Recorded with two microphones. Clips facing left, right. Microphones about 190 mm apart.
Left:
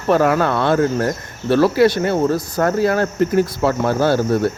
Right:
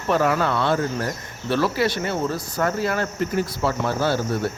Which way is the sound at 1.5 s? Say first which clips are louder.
Left 8 dB; 40° left (ahead or behind).